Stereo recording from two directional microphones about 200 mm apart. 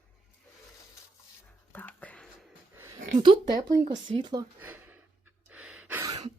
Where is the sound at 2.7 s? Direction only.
15° right (ahead or behind).